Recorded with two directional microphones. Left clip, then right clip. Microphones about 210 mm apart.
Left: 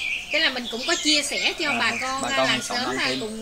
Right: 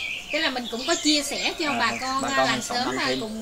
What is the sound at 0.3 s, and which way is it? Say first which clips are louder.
Speech: left 2 dB; 50° right (ahead or behind).